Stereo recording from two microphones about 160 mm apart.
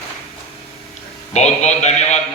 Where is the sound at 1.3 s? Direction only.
45° left (ahead or behind).